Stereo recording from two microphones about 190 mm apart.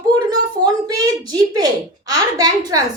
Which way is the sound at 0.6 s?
20° right (ahead or behind).